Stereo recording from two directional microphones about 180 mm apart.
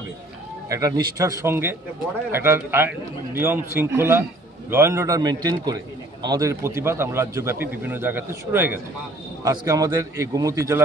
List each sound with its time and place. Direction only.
0.7 s a man's voice: 20° right (ahead or behind)